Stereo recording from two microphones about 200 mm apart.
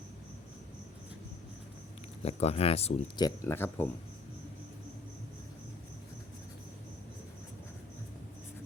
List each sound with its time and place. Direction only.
2.2 s speech: 30° left (ahead or behind)
3.2 s speech: 10° left (ahead or behind)